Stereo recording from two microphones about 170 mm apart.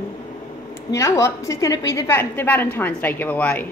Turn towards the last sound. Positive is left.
turn(degrees=10)  # may be behind; listen again after turning